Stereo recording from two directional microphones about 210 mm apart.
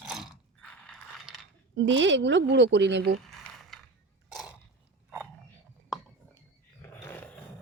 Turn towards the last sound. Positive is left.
turn(degrees=10)  # may be behind; listen again after turning